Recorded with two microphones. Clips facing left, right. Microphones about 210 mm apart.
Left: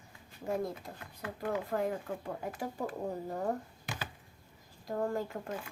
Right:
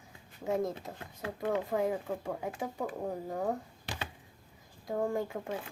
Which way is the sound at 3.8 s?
35° right (ahead or behind).